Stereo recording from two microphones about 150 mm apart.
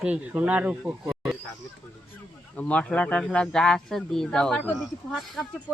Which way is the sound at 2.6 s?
10° left (ahead or behind).